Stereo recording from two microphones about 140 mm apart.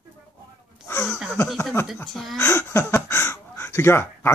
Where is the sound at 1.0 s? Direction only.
Centre (ahead or behind).